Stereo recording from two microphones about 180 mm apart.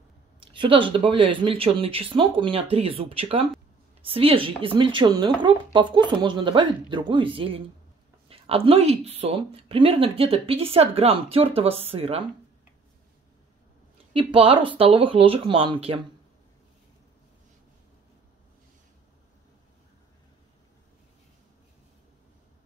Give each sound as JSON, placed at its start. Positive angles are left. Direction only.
{"t": 0.4, "sound": "a woman's voice", "side_deg": -30}
{"t": 14.1, "sound": "speech", "side_deg": -30}